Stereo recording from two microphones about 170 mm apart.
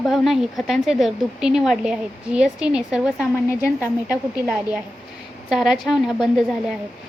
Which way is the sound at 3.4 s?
15° left (ahead or behind).